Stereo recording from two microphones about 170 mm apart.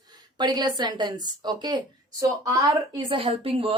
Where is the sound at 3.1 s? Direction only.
30° right (ahead or behind).